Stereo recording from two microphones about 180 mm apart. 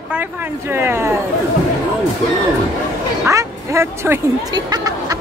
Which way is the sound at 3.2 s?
15° right (ahead or behind).